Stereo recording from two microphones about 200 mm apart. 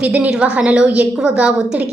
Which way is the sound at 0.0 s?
5° right (ahead or behind).